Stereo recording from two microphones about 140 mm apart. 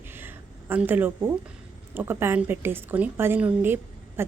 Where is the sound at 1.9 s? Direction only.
15° right (ahead or behind).